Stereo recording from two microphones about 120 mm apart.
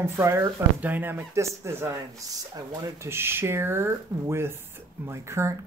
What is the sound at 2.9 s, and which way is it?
Speech, 20° right (ahead or behind).